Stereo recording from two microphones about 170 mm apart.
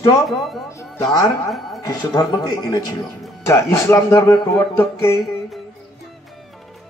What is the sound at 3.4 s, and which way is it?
Speech, 15° left (ahead or behind).